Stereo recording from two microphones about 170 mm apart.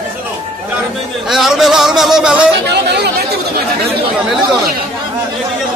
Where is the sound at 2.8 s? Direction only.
75° right (ahead or behind).